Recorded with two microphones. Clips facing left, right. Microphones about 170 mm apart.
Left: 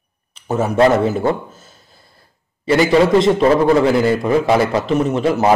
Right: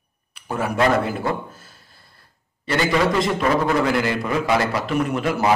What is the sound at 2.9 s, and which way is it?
A man's voice, 30° left (ahead or behind).